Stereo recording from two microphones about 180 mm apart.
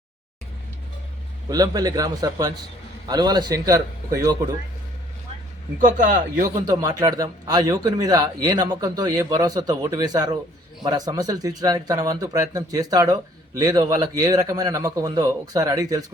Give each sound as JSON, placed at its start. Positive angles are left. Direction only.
{"t": 1.5, "sound": "a man's voice", "side_deg": -20}
{"t": 5.8, "sound": "speech", "side_deg": -45}
{"t": 6.6, "sound": "a man's voice", "side_deg": -20}